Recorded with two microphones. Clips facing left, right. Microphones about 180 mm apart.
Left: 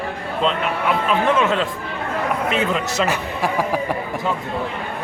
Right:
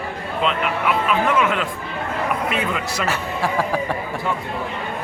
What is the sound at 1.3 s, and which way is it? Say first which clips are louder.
A man's voice: left 1 dB; 25° left (ahead or behind).